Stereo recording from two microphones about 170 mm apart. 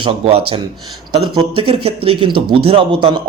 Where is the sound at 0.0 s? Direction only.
35° right (ahead or behind).